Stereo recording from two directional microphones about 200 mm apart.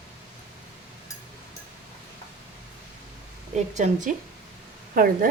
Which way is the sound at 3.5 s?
35° right (ahead or behind).